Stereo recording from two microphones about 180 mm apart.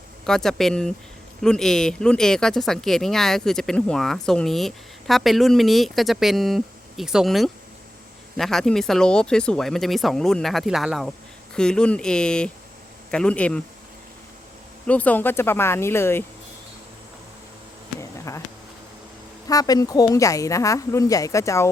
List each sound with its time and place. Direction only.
0.3 s speech: centre (ahead or behind)
14.8 s speech: 10° left (ahead or behind)
18.3 s speech: 15° left (ahead or behind)
19.5 s a woman's voice: 20° left (ahead or behind)